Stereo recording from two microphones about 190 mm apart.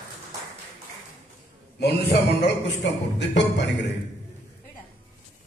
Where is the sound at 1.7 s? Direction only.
60° left (ahead or behind).